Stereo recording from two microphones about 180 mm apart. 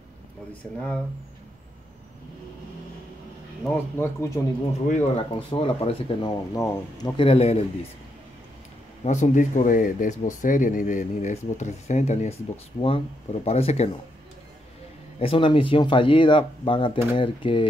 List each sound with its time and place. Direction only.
0.5 s speech: 5° left (ahead or behind)
3.6 s speech: 15° left (ahead or behind)
4.8 s speech: 45° left (ahead or behind)
5.5 s speech: 30° left (ahead or behind)
6.5 s speech: 20° left (ahead or behind)
7.2 s speech: 30° left (ahead or behind)
9.0 s speech: 40° left (ahead or behind)
15.1 s speech: 30° left (ahead or behind)